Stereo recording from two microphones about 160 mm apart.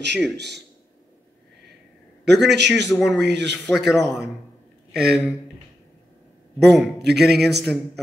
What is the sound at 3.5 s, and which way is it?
Speech, centre (ahead or behind).